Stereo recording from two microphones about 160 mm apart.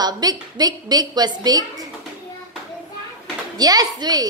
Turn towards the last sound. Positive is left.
turn(degrees=-25)  # may be behind; listen again after turning